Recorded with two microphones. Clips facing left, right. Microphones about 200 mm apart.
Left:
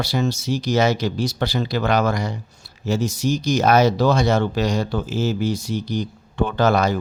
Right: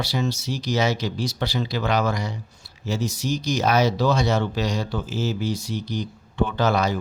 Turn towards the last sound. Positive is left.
turn(degrees=50)  # may be behind; listen again after turning